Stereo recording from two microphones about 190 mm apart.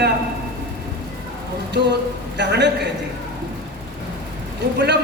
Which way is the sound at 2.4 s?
65° right (ahead or behind).